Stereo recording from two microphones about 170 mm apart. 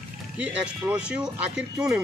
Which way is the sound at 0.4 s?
10° right (ahead or behind).